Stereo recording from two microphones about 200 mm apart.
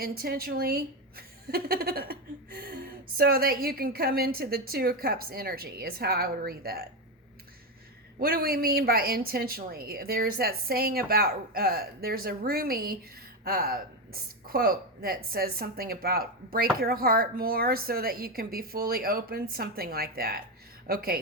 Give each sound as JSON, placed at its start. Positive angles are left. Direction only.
{"t": 0.0, "sound": "a woman's voice", "side_deg": -50}
{"t": 8.2, "sound": "a woman's voice", "side_deg": -50}